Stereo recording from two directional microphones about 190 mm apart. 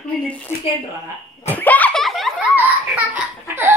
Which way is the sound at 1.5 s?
10° left (ahead or behind).